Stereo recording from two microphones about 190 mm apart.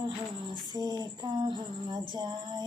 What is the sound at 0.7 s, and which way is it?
Female singing, 20° right (ahead or behind).